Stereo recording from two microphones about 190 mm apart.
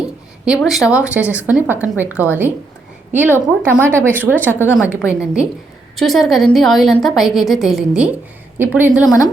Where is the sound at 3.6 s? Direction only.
10° right (ahead or behind).